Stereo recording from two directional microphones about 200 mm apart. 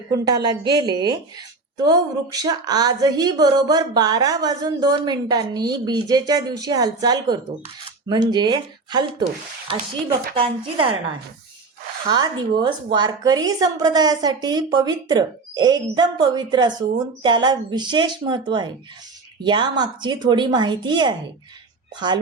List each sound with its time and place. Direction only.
0.1 s a woman's voice: 20° right (ahead or behind)
12.1 s a woman's voice: 20° right (ahead or behind)